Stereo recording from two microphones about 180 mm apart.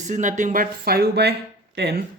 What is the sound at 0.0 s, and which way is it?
Speech, 45° right (ahead or behind).